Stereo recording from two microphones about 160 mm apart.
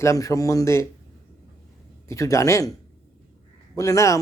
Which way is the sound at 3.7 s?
20° left (ahead or behind).